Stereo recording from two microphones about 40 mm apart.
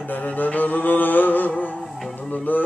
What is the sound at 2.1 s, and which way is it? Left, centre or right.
Music, left.